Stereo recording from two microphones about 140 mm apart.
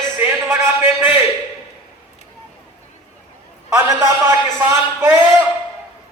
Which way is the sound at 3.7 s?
20° right (ahead or behind).